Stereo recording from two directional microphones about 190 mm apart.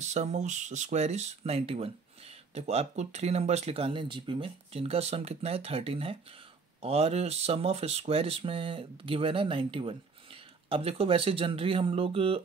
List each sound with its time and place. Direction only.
0.0 s speech: 35° right (ahead or behind)